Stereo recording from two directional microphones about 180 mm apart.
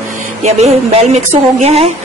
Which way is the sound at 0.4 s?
40° right (ahead or behind).